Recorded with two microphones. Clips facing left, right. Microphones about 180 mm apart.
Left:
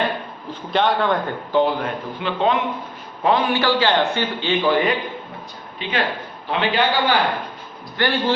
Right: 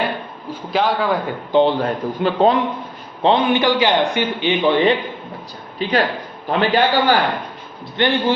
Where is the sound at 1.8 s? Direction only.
35° right (ahead or behind).